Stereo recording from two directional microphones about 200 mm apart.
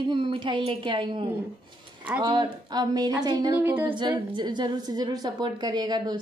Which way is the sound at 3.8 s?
25° right (ahead or behind).